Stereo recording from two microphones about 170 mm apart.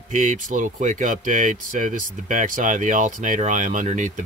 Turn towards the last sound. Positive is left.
turn(degrees=-45)  # may be behind; listen again after turning